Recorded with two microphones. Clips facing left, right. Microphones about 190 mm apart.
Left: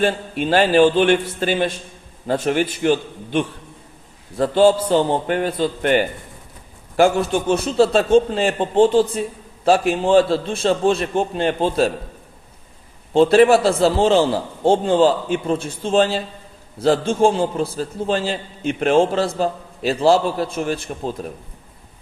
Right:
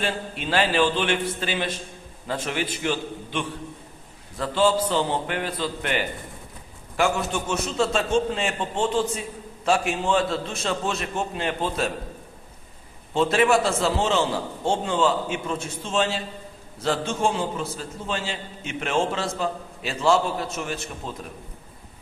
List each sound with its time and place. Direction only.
0.0 s a man's voice: 45° left (ahead or behind)
6.9 s a man's voice: 35° left (ahead or behind)
13.1 s a man's voice: 35° left (ahead or behind)